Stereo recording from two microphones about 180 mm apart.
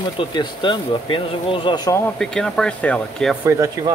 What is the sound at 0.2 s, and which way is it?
Speech, 25° left (ahead or behind).